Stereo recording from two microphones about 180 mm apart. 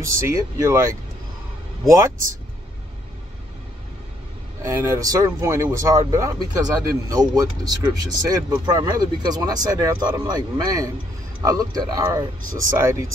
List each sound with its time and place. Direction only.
0.0 s speech: 20° right (ahead or behind)
1.9 s speech: 15° right (ahead or behind)
4.6 s speech: 15° right (ahead or behind)